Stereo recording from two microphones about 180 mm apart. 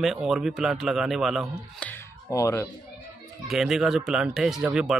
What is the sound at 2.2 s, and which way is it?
Speech, 15° left (ahead or behind).